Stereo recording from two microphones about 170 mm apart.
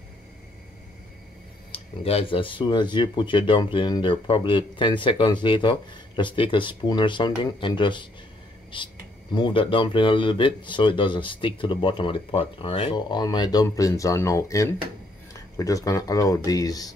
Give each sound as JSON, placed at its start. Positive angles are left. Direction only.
{"t": 1.7, "sound": "speech", "side_deg": 35}